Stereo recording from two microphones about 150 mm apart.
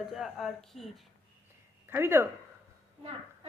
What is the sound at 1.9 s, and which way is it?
Speech, 15° right (ahead or behind).